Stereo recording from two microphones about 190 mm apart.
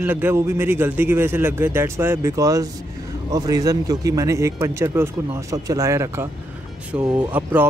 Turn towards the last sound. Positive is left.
turn(degrees=-10)  # may be behind; listen again after turning